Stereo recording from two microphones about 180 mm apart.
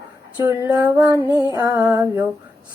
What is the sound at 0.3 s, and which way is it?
Humming, 15° right (ahead or behind).